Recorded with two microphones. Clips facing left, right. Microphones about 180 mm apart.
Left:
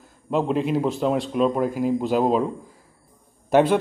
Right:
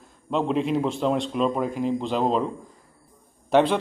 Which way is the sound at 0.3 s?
5° left (ahead or behind).